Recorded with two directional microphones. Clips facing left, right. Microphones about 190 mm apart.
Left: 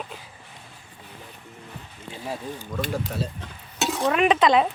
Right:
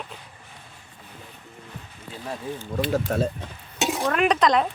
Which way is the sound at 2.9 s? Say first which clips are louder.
Right 8 dB; 50° right (ahead or behind).